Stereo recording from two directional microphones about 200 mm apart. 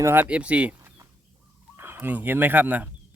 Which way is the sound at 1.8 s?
10° right (ahead or behind).